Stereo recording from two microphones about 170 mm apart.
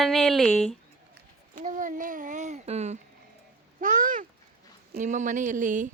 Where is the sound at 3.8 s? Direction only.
55° right (ahead or behind).